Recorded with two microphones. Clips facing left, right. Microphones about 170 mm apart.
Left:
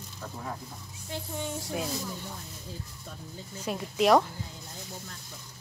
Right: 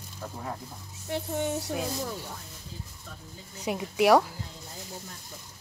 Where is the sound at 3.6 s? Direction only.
15° right (ahead or behind).